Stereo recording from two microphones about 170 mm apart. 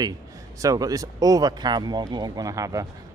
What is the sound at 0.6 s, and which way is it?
Speech, 20° right (ahead or behind).